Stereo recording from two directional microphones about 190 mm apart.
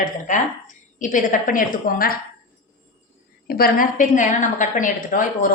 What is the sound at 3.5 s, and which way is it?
A woman's voice, 50° left (ahead or behind).